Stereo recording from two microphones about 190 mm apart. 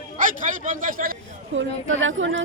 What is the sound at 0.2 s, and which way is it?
Speech, 40° right (ahead or behind).